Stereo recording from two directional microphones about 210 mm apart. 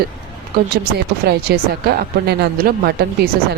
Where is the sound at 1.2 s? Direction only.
50° right (ahead or behind).